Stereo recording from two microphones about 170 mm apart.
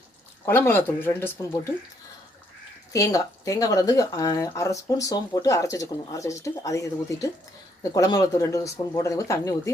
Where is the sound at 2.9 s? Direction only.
20° left (ahead or behind).